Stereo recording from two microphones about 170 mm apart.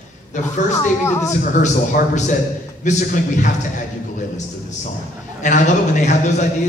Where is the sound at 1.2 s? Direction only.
45° left (ahead or behind).